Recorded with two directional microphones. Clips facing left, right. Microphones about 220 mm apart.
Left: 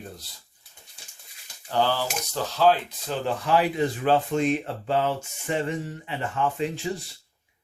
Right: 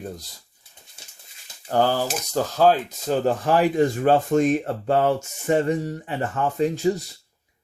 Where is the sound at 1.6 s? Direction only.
45° right (ahead or behind).